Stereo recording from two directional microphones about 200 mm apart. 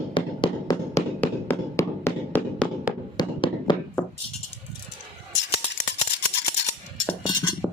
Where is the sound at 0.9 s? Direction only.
15° left (ahead or behind).